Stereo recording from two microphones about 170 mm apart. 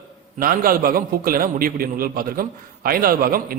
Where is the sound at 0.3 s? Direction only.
55° right (ahead or behind).